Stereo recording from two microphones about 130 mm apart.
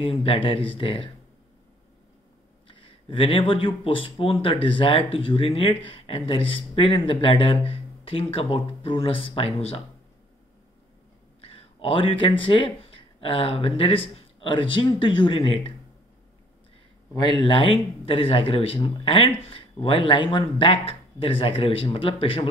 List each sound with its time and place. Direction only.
0.0 s speech: 50° left (ahead or behind)
2.7 s speech: 45° left (ahead or behind)
11.4 s speech: 50° left (ahead or behind)
17.1 s speech: 40° left (ahead or behind)